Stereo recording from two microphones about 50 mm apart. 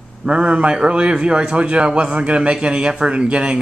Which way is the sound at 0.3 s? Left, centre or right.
Right.